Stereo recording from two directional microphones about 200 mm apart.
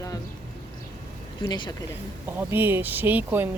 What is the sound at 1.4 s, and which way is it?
Speech, 20° left (ahead or behind).